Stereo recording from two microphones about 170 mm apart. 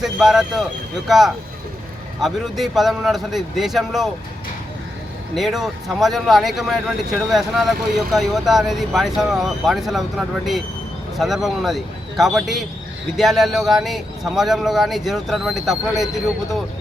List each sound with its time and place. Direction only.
0.0 s speech: centre (ahead or behind)
5.3 s speech: centre (ahead or behind)